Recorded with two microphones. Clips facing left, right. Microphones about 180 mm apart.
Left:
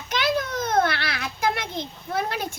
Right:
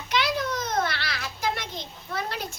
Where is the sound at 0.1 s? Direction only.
50° left (ahead or behind).